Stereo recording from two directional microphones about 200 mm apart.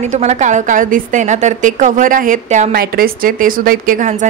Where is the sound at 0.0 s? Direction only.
35° right (ahead or behind).